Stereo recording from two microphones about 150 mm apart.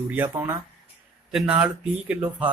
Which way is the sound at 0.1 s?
15° right (ahead or behind).